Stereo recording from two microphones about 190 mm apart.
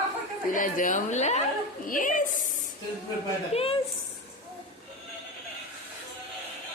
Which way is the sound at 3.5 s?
30° left (ahead or behind).